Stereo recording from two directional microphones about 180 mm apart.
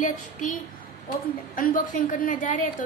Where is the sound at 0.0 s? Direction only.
45° left (ahead or behind).